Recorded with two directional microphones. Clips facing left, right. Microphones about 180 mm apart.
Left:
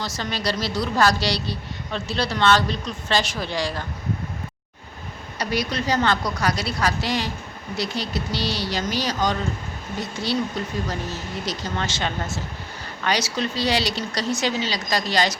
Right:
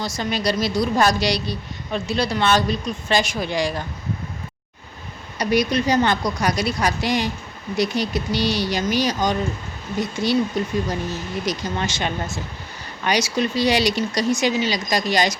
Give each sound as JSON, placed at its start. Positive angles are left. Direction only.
{"t": 0.0, "sound": "a woman's voice", "side_deg": -15}
{"t": 5.4, "sound": "a woman's voice", "side_deg": -15}